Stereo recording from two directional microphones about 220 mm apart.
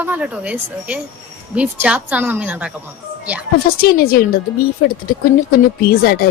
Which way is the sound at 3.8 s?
45° left (ahead or behind).